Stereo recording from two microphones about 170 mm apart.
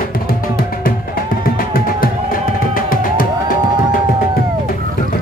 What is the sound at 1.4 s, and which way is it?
Music, 55° left (ahead or behind).